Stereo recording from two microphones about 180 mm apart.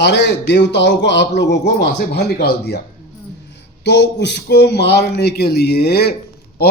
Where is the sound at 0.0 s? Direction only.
70° left (ahead or behind).